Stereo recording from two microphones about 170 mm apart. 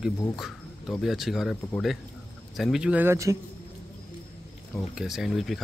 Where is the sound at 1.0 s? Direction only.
Centre (ahead or behind).